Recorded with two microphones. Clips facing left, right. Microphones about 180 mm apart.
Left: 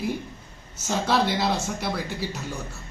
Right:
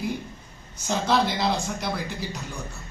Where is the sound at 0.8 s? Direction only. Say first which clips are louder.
Even; 5° left (ahead or behind).